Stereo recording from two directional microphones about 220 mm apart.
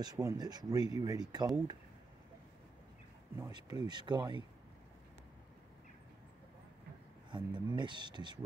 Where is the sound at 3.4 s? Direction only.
20° right (ahead or behind).